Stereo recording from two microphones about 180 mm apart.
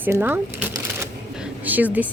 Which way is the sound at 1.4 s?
10° right (ahead or behind).